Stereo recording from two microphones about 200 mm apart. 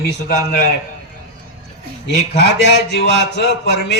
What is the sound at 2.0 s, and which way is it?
Speech, 60° left (ahead or behind).